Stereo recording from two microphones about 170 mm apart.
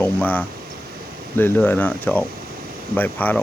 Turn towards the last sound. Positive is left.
turn(degrees=10)  # may be behind; listen again after turning